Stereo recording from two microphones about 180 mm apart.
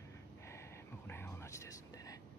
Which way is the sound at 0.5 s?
15° left (ahead or behind).